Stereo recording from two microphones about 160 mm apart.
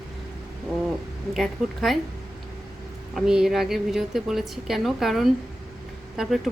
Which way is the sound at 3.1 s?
5° right (ahead or behind).